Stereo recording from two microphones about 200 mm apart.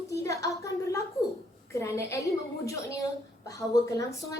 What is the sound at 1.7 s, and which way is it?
Speech, 15° left (ahead or behind).